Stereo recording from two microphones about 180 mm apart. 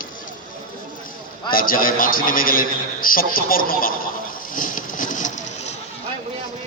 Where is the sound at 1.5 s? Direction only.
50° left (ahead or behind).